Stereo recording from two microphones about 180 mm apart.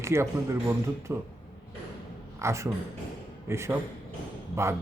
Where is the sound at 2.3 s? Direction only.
15° right (ahead or behind).